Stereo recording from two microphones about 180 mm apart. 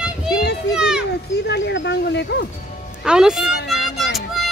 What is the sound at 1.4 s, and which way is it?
Speech, 75° left (ahead or behind).